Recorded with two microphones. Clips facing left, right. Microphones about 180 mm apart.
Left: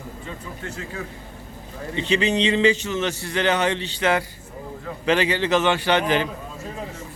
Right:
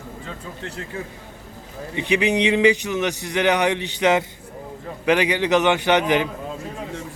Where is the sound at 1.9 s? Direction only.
15° right (ahead or behind).